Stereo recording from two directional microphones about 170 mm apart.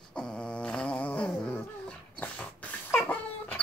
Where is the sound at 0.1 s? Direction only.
5° left (ahead or behind).